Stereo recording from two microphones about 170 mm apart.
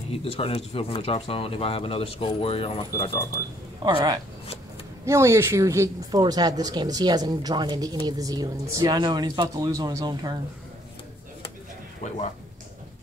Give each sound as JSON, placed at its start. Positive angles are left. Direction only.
{"t": 0.1, "sound": "speech", "side_deg": 35}
{"t": 3.8, "sound": "a woman's voice", "side_deg": -25}